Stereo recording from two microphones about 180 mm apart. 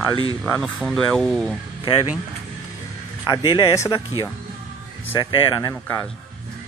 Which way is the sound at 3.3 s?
25° left (ahead or behind).